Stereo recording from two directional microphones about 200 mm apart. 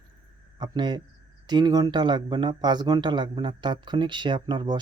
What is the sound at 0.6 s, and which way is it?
Speech, 20° right (ahead or behind).